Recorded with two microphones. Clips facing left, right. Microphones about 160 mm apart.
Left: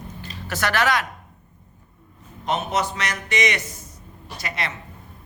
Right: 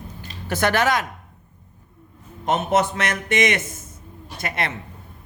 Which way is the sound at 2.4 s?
50° right (ahead or behind).